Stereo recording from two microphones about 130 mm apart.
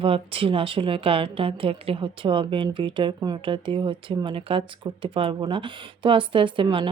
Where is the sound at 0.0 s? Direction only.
45° right (ahead or behind).